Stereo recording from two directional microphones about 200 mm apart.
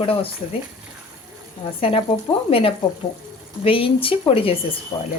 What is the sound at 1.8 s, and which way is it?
Speech, 30° left (ahead or behind).